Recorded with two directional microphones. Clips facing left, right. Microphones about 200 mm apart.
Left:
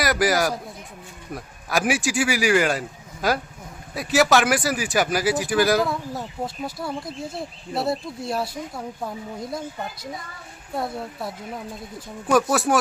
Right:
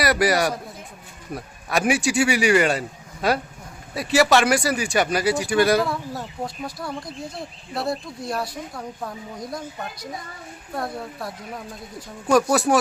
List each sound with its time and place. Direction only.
0.0 s speech: centre (ahead or behind)
7.3 s speech: 25° left (ahead or behind)
8.4 s speech: 5° left (ahead or behind)
10.8 s speech: centre (ahead or behind)